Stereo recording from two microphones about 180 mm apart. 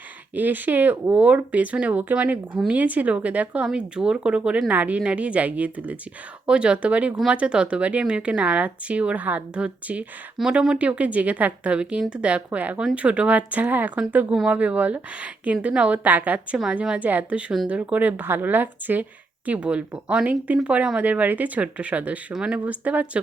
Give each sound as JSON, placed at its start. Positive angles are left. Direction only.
{"t": 0.3, "sound": "speech", "side_deg": -10}